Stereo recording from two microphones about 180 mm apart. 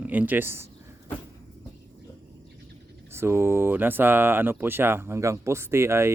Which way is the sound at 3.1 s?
15° right (ahead or behind).